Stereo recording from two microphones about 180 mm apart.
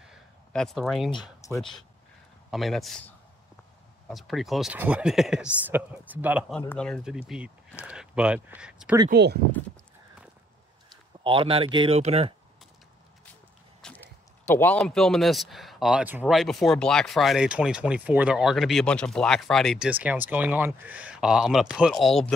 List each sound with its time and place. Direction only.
0.0 s a sound: centre (ahead or behind)
1.5 s speech: centre (ahead or behind)
4.1 s speech: centre (ahead or behind)
6.7 s speech: 5° left (ahead or behind)
9.1 s speech: 65° right (ahead or behind)
11.2 s speech: 30° right (ahead or behind)
13.7 s speech: 5° left (ahead or behind)
19.9 s speech: 10° right (ahead or behind)